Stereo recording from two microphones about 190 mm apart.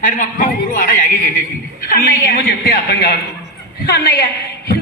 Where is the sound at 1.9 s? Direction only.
50° left (ahead or behind).